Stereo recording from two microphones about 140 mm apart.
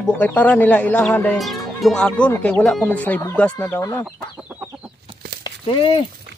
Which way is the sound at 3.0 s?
15° left (ahead or behind).